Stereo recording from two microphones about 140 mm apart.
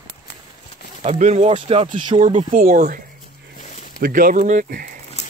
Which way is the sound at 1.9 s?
65° right (ahead or behind).